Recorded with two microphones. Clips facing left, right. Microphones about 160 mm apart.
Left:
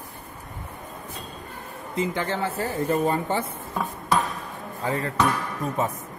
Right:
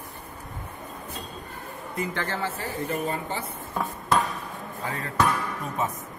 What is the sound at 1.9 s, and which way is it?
Speech, 20° left (ahead or behind).